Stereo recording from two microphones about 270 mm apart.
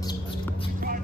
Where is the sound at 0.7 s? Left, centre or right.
Right.